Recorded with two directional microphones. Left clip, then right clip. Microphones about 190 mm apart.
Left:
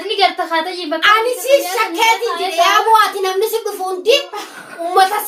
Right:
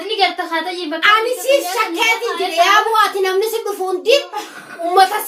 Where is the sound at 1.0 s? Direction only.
15° left (ahead or behind).